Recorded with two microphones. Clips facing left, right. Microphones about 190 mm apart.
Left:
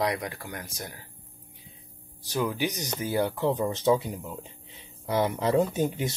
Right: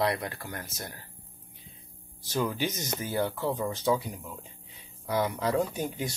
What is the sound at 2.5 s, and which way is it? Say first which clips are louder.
Speech: left 2 dB; 15° left (ahead or behind).